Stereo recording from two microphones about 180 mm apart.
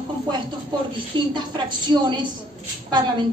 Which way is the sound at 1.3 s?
25° right (ahead or behind).